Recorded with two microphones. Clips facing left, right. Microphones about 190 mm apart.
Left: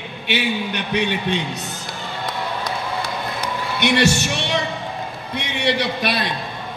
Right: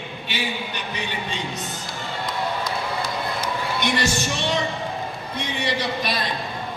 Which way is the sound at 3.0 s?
65° left (ahead or behind).